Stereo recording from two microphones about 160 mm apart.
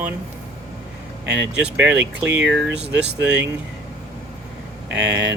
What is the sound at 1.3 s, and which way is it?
Speech, 5° right (ahead or behind).